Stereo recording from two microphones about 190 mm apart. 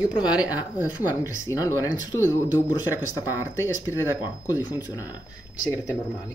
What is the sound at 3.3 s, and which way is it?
Speech, 15° left (ahead or behind).